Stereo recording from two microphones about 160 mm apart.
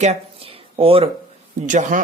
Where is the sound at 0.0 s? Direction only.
40° right (ahead or behind).